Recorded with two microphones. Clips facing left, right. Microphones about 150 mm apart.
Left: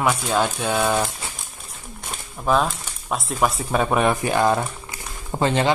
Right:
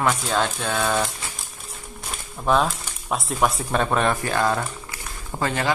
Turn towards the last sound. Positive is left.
turn(degrees=25)  # may be behind; listen again after turning